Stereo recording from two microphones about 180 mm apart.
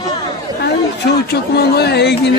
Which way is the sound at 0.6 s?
65° left (ahead or behind).